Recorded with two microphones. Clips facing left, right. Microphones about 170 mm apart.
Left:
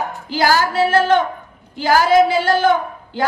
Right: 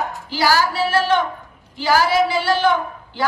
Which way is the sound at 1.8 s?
50° left (ahead or behind).